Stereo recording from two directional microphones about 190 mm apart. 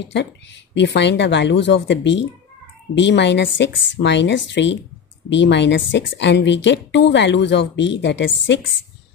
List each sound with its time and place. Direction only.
0.0 s a woman's voice: 65° left (ahead or behind)